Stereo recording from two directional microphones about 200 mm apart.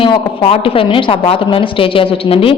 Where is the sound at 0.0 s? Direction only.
30° left (ahead or behind).